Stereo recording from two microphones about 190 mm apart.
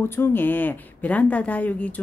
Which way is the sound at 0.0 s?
10° left (ahead or behind).